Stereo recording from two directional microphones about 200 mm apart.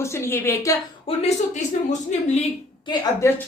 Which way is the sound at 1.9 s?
35° left (ahead or behind).